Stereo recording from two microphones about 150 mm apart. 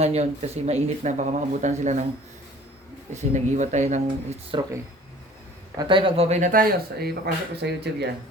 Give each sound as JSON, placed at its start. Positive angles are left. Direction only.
{"t": 0.0, "sound": "speech", "side_deg": -45}
{"t": 3.2, "sound": "speech", "side_deg": -50}
{"t": 5.7, "sound": "speech", "side_deg": -30}
{"t": 6.5, "sound": "speech", "side_deg": -80}